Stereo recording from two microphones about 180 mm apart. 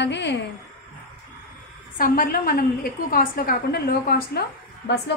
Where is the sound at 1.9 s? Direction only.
55° left (ahead or behind).